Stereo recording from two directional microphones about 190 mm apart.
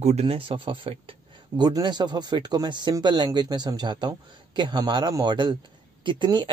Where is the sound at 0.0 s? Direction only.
35° right (ahead or behind).